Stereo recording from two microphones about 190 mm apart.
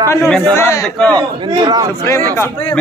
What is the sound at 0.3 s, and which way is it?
Speech, 5° left (ahead or behind).